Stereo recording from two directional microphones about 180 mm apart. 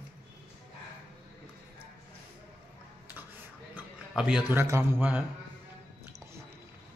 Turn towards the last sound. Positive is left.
turn(degrees=-10)  # may be behind; listen again after turning